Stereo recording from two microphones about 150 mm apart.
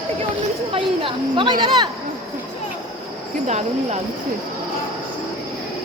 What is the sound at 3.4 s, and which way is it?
Speech, 50° right (ahead or behind).